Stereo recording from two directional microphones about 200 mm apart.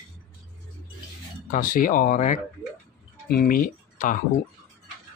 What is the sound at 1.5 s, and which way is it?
Speech, 45° left (ahead or behind).